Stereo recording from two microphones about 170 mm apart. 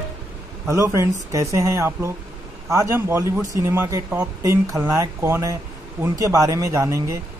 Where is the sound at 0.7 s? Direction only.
15° right (ahead or behind).